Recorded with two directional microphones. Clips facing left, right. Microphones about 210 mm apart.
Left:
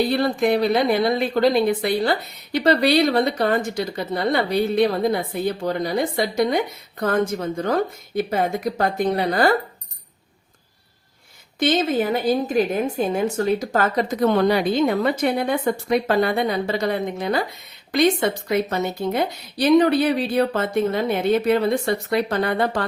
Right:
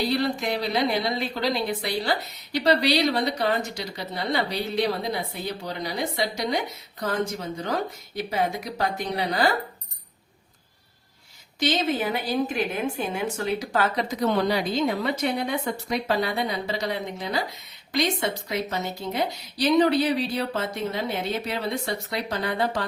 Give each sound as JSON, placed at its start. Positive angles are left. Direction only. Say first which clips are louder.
{"t": 0.1, "sound": "a woman's voice", "louder": "left 6 dB", "side_deg": 55}
{"t": 11.6, "sound": "a woman's voice", "louder": "left 5 dB", "side_deg": 50}